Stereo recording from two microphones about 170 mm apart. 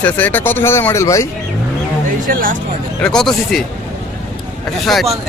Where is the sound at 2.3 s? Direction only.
55° right (ahead or behind).